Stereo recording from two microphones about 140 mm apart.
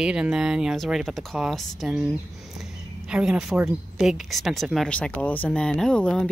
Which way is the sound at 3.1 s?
5° right (ahead or behind).